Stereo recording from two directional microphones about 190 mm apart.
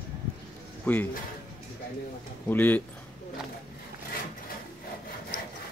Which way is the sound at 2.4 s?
10° left (ahead or behind).